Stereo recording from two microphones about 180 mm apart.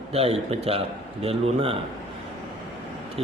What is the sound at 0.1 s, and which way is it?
Speech, 35° right (ahead or behind).